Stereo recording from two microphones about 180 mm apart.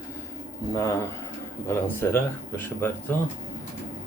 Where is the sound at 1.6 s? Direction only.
15° left (ahead or behind).